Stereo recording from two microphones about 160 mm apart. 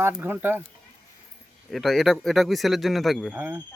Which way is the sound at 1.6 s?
Centre (ahead or behind).